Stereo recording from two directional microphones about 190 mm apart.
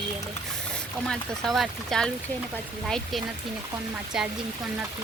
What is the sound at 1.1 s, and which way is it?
Speech, centre (ahead or behind).